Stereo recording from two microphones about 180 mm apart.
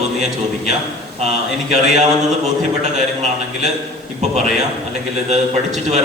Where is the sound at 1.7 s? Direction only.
40° right (ahead or behind).